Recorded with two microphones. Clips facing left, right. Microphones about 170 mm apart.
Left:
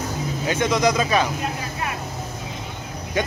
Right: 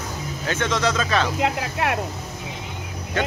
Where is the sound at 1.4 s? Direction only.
75° right (ahead or behind).